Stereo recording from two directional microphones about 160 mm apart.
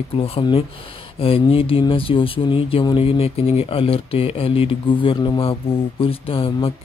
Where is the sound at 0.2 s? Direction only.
35° left (ahead or behind).